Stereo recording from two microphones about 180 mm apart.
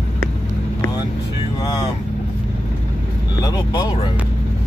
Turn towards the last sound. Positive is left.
turn(degrees=25)  # may be behind; listen again after turning